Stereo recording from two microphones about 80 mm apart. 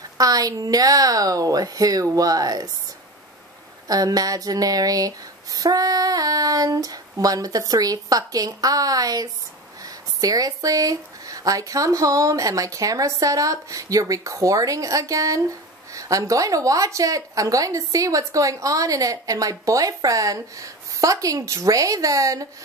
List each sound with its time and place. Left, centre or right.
0.2 s a woman's voice: right
3.8 s a woman's voice: right